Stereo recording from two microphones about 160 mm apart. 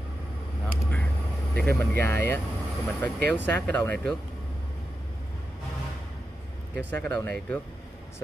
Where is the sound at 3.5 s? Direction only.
10° left (ahead or behind).